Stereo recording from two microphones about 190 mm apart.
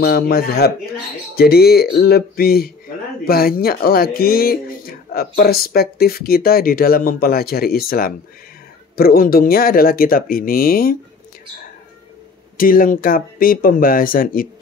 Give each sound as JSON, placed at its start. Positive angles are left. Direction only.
{"t": 0.0, "sound": "speech", "side_deg": 55}
{"t": 12.5, "sound": "speech", "side_deg": 50}